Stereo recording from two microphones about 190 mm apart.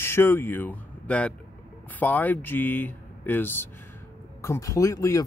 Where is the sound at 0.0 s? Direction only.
10° left (ahead or behind).